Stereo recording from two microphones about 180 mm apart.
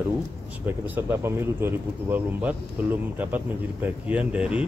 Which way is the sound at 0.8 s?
10° right (ahead or behind).